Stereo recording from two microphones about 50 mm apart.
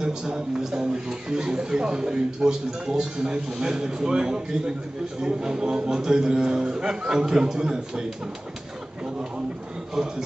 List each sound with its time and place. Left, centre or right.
0.0 s a man's voice: centre